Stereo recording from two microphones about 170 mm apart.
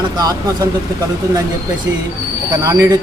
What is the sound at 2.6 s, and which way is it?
Speech, 15° right (ahead or behind).